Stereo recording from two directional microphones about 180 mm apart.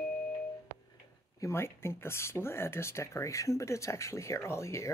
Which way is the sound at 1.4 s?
15° left (ahead or behind).